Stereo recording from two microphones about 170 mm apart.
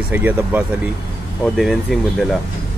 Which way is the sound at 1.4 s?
Centre (ahead or behind).